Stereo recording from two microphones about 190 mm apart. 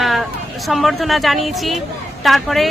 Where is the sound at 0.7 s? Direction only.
Centre (ahead or behind).